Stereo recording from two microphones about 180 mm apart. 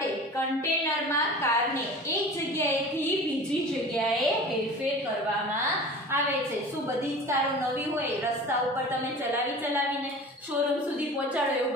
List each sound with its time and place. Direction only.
0.8 s a woman's voice: 15° left (ahead or behind)
3.9 s a woman's voice: centre (ahead or behind)